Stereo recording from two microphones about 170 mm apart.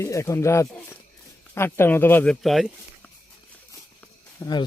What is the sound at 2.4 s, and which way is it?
Speech, centre (ahead or behind).